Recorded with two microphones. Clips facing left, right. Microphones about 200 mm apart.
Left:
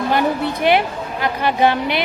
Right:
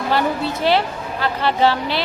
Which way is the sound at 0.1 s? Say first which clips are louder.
Even; 15° left (ahead or behind).